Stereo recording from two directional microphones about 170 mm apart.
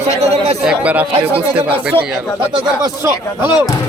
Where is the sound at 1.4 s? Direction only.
35° right (ahead or behind).